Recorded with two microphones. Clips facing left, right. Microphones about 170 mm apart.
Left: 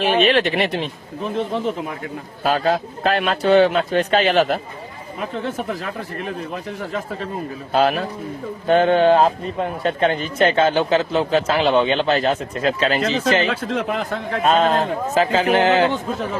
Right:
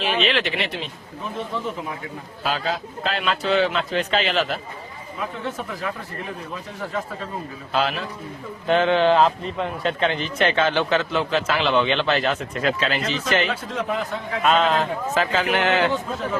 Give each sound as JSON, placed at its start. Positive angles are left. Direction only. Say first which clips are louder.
{"t": 0.0, "sound": "speech", "louder": "left 6 dB", "side_deg": 50}
{"t": 2.4, "sound": "speech", "louder": "left 7 dB", "side_deg": 50}
{"t": 7.7, "sound": "a man's voice", "louder": "left 6 dB", "side_deg": 45}
{"t": 13.7, "sound": "a man's voice", "louder": "left 3 dB", "side_deg": 65}
{"t": 14.4, "sound": "a man's voice", "louder": "left 2 dB", "side_deg": 40}